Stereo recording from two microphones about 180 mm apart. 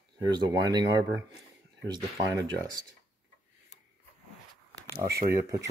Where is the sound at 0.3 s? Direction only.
25° right (ahead or behind).